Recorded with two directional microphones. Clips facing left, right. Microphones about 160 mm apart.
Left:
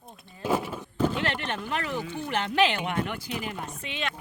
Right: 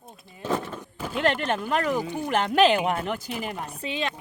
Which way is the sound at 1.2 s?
45° right (ahead or behind).